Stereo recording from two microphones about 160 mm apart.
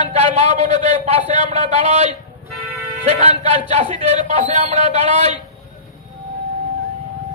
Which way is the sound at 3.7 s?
50° right (ahead or behind).